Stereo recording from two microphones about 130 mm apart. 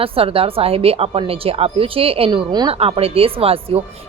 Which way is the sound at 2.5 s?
35° right (ahead or behind).